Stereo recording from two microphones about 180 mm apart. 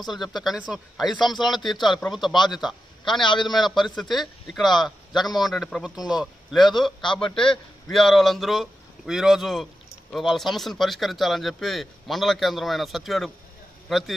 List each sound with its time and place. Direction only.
0.0 s a man's voice: centre (ahead or behind)
3.3 s a man's voice: 25° left (ahead or behind)
3.5 s a man's voice: centre (ahead or behind)